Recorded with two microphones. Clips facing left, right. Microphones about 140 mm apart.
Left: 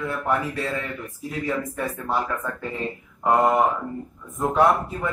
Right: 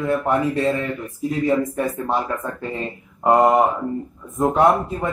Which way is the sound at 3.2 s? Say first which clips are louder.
Right 4 dB; 20° right (ahead or behind).